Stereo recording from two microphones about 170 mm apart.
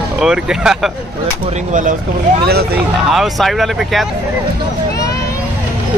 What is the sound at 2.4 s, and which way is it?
Speech, 65° right (ahead or behind).